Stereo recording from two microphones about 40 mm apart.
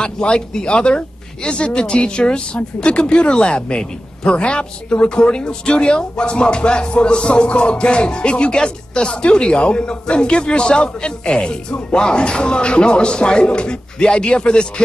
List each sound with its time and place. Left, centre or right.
0.0 s music: left